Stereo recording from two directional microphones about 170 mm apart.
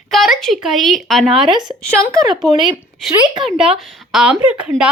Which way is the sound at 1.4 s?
25° right (ahead or behind).